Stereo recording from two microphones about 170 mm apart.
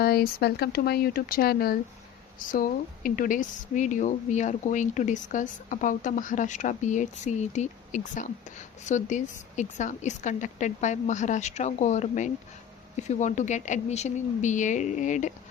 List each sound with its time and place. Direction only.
0.0 s speech: 65° left (ahead or behind); by 15.3 s 45° left (ahead or behind)